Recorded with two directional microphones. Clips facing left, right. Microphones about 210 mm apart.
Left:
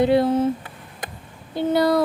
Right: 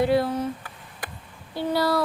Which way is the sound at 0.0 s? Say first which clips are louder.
Left 5 dB; 25° left (ahead or behind).